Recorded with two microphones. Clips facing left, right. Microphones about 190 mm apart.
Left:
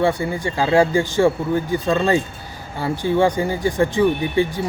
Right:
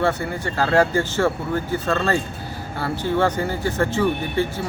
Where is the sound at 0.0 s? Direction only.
10° left (ahead or behind).